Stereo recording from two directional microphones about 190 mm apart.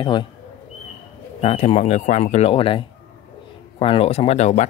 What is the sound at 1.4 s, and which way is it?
Speech, 30° left (ahead or behind).